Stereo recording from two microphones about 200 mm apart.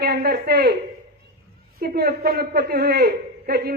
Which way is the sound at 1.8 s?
50° right (ahead or behind).